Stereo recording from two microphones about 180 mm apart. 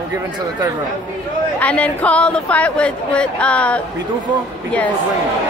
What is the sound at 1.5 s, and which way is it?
A woman's voice, 5° left (ahead or behind).